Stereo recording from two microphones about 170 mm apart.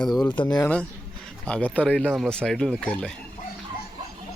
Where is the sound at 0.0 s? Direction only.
5° left (ahead or behind).